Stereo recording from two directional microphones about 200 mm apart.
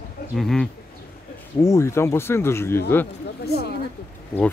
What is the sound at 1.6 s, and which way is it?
Speech, 15° left (ahead or behind).